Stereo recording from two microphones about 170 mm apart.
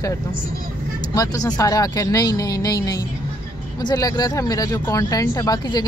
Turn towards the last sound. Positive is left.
turn(degrees=25)  # may be behind; listen again after turning